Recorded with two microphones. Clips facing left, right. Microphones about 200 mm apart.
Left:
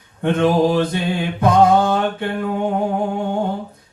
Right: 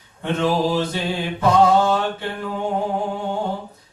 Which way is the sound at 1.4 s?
55° left (ahead or behind).